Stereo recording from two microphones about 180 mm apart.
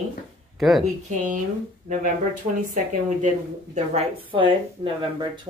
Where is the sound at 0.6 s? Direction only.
Centre (ahead or behind).